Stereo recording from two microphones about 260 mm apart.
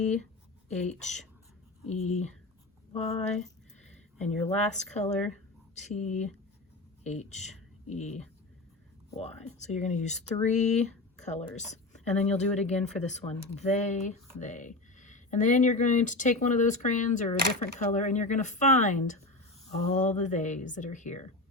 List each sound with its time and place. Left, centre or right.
0.7 s speech: left
1.0 s speech: centre
1.9 s speech: left
4.2 s speech: left